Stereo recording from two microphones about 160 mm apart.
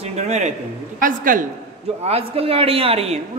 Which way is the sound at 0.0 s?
45° right (ahead or behind).